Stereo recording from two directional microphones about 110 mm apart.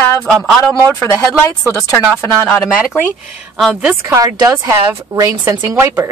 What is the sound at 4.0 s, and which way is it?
Speech, 30° right (ahead or behind).